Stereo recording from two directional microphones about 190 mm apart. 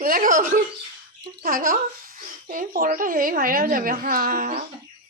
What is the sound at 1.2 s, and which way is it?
A child's voice, 50° right (ahead or behind).